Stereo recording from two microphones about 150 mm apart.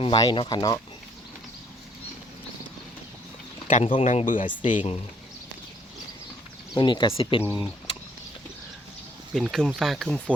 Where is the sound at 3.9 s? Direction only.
45° left (ahead or behind); by 4.5 s 60° left (ahead or behind).